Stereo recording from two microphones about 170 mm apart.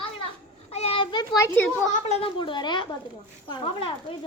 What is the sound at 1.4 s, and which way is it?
Child singing, 15° left (ahead or behind).